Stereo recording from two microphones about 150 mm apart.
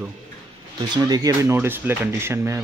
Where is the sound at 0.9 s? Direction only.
25° right (ahead or behind).